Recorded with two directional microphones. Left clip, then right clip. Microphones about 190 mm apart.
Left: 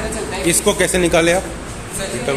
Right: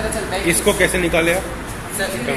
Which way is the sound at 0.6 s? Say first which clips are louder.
Left 1 dB; 30° left (ahead or behind).